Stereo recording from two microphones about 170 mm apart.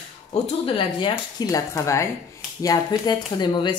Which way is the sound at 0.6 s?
30° left (ahead or behind).